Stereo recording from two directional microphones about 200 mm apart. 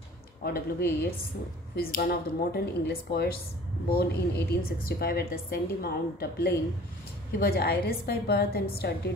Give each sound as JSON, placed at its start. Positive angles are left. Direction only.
{"t": 0.4, "sound": "a woman's voice", "side_deg": 50}